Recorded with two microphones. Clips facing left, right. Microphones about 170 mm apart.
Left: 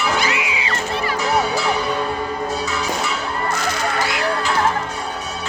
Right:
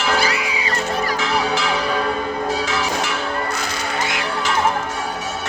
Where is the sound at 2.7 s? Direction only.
90° right.